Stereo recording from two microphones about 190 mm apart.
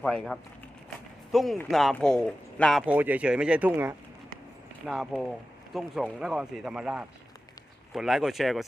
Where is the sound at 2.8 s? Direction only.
10° right (ahead or behind).